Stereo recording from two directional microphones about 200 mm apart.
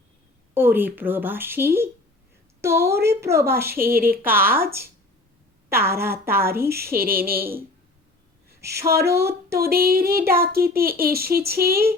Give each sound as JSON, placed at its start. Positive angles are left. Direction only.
{"t": 0.5, "sound": "a woman's voice", "side_deg": -10}
{"t": 3.7, "sound": "a child's voice", "side_deg": -45}
{"t": 4.2, "sound": "speech", "side_deg": -10}
{"t": 6.7, "sound": "a child's voice", "side_deg": -50}
{"t": 8.6, "sound": "speech", "side_deg": -15}
{"t": 9.6, "sound": "a child's voice", "side_deg": -50}